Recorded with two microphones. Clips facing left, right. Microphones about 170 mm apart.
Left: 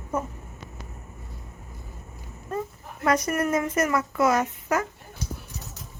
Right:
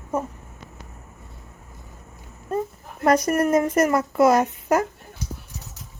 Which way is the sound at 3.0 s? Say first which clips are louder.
Right 5 dB; 35° right (ahead or behind).